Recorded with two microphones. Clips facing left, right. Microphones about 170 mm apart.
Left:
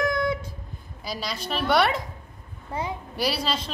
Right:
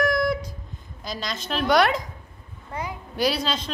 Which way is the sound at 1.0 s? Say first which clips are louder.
Even; 5° left (ahead or behind).